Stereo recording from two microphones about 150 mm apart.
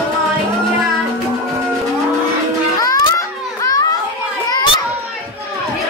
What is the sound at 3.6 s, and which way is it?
Children playing, 25° left (ahead or behind).